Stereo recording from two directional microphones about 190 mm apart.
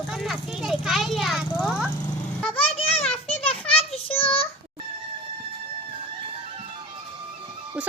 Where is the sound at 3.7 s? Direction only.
30° left (ahead or behind).